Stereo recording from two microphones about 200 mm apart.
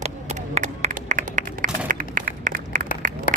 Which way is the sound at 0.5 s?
35° right (ahead or behind).